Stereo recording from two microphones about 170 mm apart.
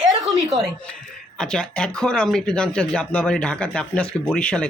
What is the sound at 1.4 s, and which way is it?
Speech, 5° left (ahead or behind).